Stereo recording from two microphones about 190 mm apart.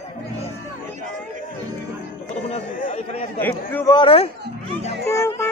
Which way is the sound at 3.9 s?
30° left (ahead or behind).